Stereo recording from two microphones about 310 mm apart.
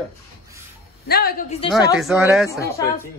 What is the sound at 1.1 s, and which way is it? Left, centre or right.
Speech, left.